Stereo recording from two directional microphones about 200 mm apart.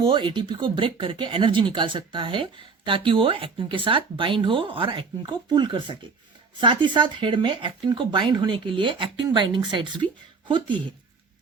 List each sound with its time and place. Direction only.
0.0 s speech: 25° right (ahead or behind)